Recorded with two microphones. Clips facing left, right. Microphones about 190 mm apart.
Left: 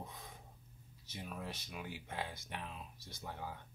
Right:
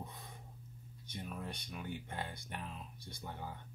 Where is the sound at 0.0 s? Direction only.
Centre (ahead or behind).